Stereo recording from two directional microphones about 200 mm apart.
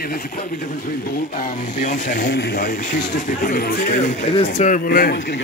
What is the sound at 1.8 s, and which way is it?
A man's voice, 40° left (ahead or behind).